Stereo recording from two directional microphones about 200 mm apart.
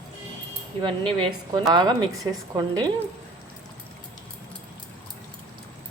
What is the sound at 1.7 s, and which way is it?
A woman's voice, 20° right (ahead or behind).